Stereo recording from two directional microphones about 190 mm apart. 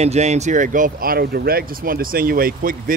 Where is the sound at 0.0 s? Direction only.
35° right (ahead or behind).